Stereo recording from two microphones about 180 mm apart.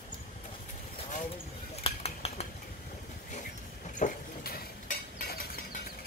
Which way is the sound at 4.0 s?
50° left (ahead or behind).